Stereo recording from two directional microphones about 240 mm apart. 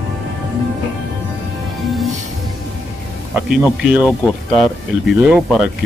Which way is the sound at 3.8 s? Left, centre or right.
Centre.